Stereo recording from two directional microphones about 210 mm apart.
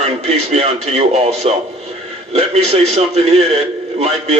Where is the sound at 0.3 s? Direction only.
30° right (ahead or behind).